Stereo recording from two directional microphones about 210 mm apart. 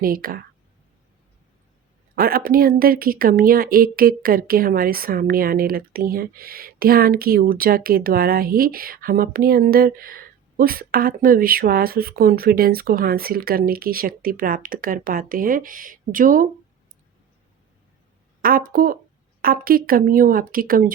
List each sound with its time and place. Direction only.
0.0 s speech: 45° right (ahead or behind)
2.1 s speech: 45° right (ahead or behind)
18.4 s speech: 40° right (ahead or behind)